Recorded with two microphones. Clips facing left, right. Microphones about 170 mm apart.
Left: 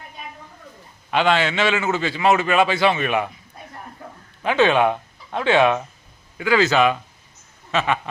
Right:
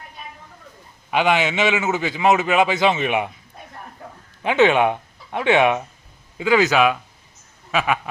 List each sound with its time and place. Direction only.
1.1 s a man's voice: 15° right (ahead or behind)
4.4 s speech: 20° right (ahead or behind)
6.7 s speech: 5° right (ahead or behind)